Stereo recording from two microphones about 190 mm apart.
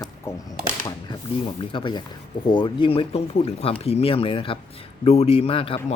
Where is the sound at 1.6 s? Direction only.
25° left (ahead or behind).